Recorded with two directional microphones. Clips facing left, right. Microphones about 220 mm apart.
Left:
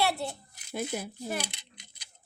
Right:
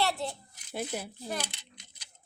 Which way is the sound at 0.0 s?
10° left (ahead or behind).